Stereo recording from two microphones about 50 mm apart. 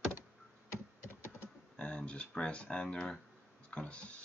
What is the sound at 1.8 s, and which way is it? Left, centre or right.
Speech, left.